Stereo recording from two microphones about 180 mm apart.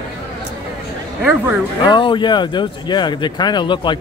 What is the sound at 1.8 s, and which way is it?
Speech, 25° left (ahead or behind).